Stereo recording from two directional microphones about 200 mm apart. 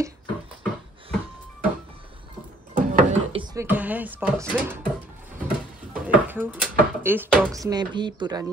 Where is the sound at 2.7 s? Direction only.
45° right (ahead or behind).